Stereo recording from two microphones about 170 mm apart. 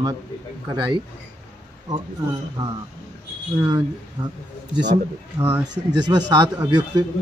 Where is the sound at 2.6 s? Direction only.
25° right (ahead or behind).